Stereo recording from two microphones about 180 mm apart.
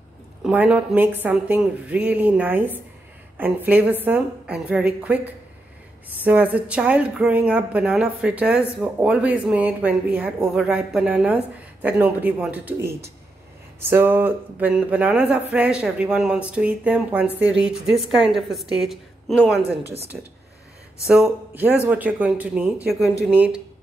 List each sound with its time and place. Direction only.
0.4 s a woman's voice: 5° right (ahead or behind)
19.6 s a woman's voice: 35° right (ahead or behind)
21.1 s speech: 5° right (ahead or behind)